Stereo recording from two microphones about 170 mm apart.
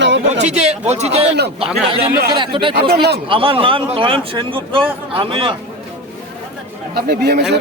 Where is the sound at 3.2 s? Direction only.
30° right (ahead or behind).